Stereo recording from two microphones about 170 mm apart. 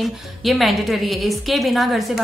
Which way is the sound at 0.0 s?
Centre (ahead or behind).